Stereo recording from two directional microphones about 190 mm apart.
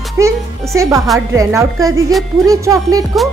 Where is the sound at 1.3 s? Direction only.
15° right (ahead or behind).